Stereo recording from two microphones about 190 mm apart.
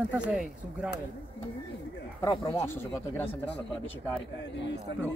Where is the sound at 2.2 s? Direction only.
15° left (ahead or behind).